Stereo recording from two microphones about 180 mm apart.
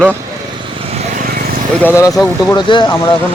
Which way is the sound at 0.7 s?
35° right (ahead or behind).